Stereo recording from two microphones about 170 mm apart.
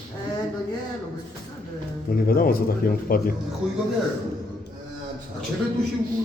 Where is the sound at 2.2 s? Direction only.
60° left (ahead or behind).